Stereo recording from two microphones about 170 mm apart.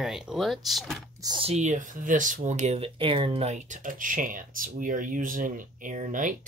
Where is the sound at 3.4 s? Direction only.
45° right (ahead or behind).